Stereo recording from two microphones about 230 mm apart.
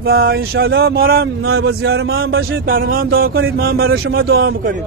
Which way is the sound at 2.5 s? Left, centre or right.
Right.